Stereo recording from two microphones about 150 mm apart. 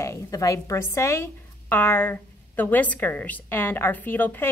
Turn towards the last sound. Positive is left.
turn(degrees=15)  # may be behind; listen again after turning